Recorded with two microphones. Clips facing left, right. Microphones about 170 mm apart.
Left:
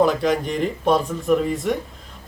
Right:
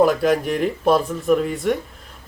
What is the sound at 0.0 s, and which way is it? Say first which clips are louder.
Speech: right 2 dB; 5° right (ahead or behind).